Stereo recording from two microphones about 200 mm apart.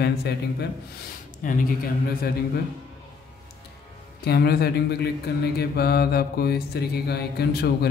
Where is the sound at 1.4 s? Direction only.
40° left (ahead or behind).